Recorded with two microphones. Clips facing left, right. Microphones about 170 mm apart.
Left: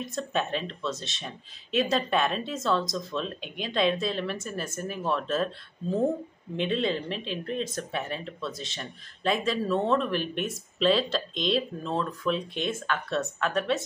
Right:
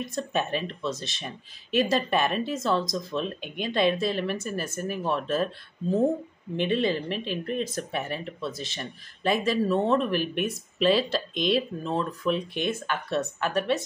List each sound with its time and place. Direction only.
0.3 s speech: 5° right (ahead or behind)